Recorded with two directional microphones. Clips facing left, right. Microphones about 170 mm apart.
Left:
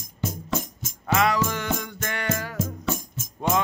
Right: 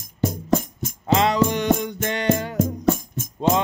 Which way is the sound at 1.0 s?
25° right (ahead or behind).